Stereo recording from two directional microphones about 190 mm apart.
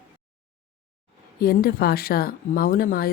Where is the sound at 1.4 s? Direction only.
50° left (ahead or behind).